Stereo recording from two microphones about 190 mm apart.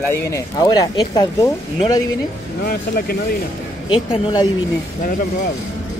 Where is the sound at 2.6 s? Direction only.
55° left (ahead or behind).